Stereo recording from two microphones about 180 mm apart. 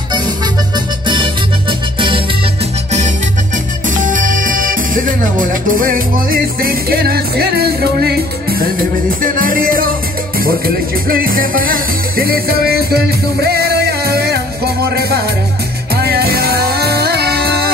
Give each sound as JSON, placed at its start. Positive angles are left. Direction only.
{"t": 1.0, "sound": "music", "side_deg": -25}
{"t": 3.9, "sound": "music", "side_deg": -45}